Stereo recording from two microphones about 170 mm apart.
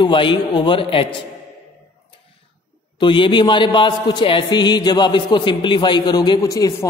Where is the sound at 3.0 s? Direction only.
30° left (ahead or behind).